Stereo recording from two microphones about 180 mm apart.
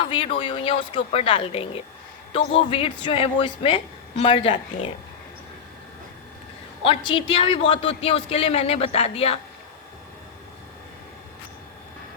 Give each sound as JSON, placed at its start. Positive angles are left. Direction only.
{"t": 0.0, "sound": "a woman's voice", "side_deg": 30}
{"t": 6.8, "sound": "a woman's voice", "side_deg": 30}